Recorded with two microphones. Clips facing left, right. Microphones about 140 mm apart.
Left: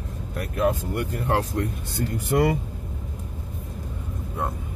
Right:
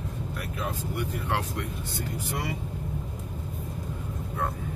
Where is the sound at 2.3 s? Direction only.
55° left (ahead or behind).